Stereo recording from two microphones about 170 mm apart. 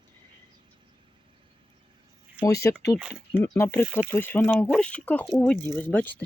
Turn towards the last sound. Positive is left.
turn(degrees=10)  # may be behind; listen again after turning